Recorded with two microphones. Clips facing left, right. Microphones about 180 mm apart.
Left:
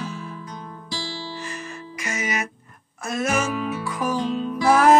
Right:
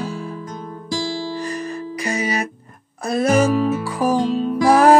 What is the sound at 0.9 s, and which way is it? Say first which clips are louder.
Music: right 9 dB; 45° right (ahead or behind).